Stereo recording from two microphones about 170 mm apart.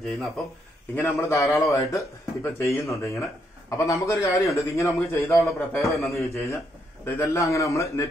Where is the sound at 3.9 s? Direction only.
15° left (ahead or behind).